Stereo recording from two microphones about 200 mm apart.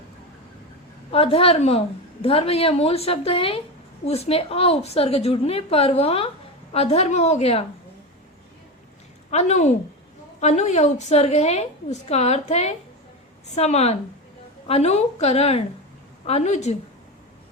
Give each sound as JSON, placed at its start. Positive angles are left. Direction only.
{"t": 1.1, "sound": "a woman's voice", "side_deg": 30}
{"t": 9.3, "sound": "a woman's voice", "side_deg": 35}